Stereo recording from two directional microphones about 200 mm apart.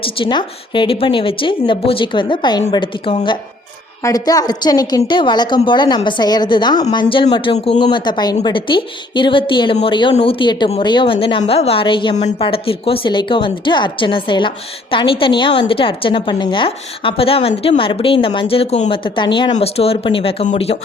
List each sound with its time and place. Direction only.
0.0 s a woman's voice: 25° left (ahead or behind)